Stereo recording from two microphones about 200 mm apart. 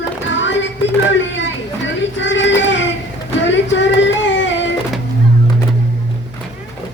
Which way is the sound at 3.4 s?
65° left (ahead or behind).